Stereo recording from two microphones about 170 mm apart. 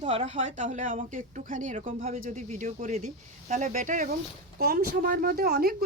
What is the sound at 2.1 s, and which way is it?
Speech, 50° right (ahead or behind).